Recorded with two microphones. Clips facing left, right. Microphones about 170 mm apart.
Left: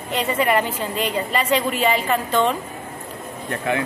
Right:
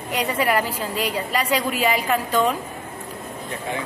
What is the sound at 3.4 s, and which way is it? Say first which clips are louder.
Speech: left 6 dB; 70° left (ahead or behind).